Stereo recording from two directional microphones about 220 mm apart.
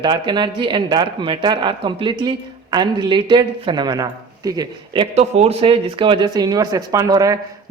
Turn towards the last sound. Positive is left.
turn(degrees=-15)  # may be behind; listen again after turning